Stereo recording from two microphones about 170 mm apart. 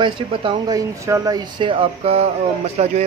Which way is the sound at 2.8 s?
45° right (ahead or behind).